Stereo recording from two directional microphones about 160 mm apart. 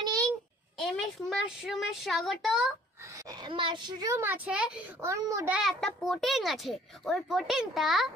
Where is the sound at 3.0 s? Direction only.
20° right (ahead or behind).